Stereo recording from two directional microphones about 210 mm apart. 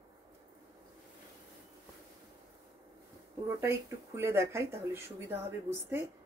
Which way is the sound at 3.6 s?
15° right (ahead or behind).